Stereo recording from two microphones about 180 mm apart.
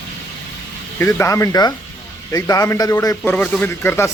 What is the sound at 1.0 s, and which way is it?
A man's voice, 15° left (ahead or behind).